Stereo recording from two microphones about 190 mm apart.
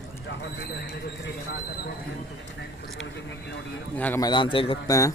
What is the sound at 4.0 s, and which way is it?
Speech, 10° left (ahead or behind).